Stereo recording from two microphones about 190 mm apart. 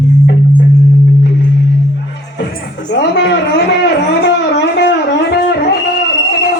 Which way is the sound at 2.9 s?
65° left (ahead or behind).